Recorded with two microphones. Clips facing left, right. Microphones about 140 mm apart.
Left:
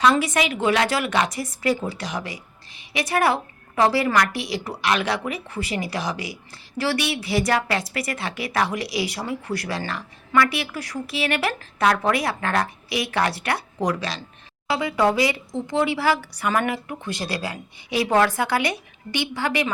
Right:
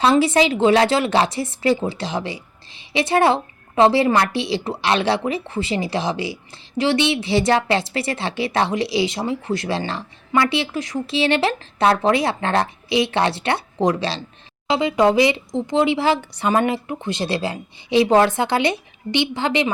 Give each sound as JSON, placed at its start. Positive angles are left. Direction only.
{"t": 0.0, "sound": "speech", "side_deg": -30}